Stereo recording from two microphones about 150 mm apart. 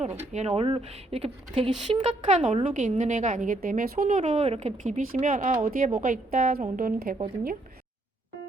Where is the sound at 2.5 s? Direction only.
60° right (ahead or behind); by 7.2 s 75° right (ahead or behind).